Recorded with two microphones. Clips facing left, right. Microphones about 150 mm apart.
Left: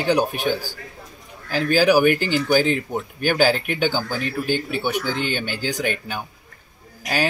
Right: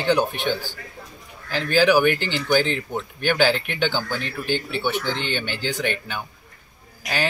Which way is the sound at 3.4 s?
45° left (ahead or behind).